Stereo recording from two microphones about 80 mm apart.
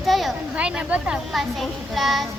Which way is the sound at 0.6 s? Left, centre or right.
Centre.